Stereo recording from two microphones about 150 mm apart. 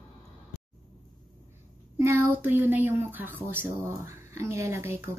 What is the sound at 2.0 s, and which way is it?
A woman's voice, 20° right (ahead or behind).